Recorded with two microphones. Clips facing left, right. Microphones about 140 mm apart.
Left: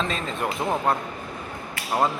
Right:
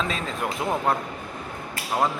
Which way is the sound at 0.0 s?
5° right (ahead or behind).